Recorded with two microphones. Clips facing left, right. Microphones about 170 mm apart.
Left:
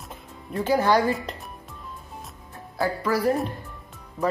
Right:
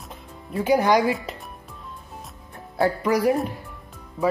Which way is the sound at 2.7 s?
20° right (ahead or behind).